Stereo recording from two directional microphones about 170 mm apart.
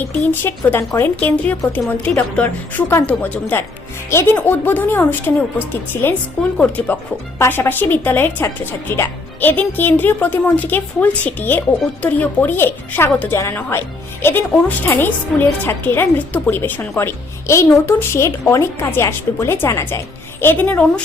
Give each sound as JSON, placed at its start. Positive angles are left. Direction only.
{"t": 0.4, "sound": "speech", "side_deg": 15}